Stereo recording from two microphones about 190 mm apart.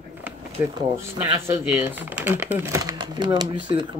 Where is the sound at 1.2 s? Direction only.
10° right (ahead or behind).